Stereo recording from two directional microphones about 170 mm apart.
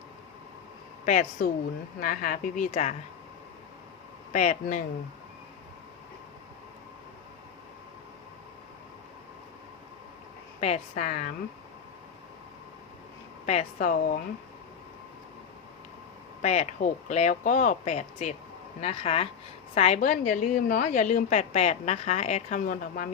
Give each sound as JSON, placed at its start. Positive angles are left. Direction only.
{"t": 1.0, "sound": "a woman's voice", "side_deg": 45}
{"t": 4.3, "sound": "a woman's voice", "side_deg": 45}
{"t": 10.6, "sound": "a woman's voice", "side_deg": 45}
{"t": 13.4, "sound": "a woman's voice", "side_deg": 45}
{"t": 16.4, "sound": "a woman's voice", "side_deg": 40}